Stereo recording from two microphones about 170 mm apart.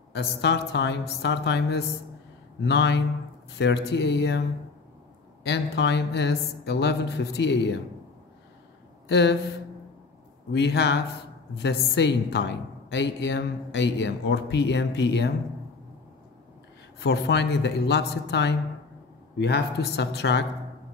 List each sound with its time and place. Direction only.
0.1 s a woman's voice: 90° left
2.6 s a woman's voice: 90° left
9.1 s a woman's voice: 90° left
10.5 s a woman's voice: 85° left
17.0 s a woman's voice: 90° left
19.3 s speech: 75° left (ahead or behind)